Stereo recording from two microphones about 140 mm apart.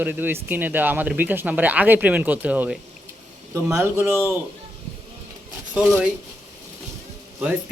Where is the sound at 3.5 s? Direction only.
20° right (ahead or behind).